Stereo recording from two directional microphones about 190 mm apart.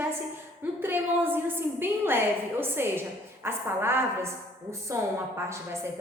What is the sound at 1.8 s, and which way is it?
A woman's voice, 10° right (ahead or behind).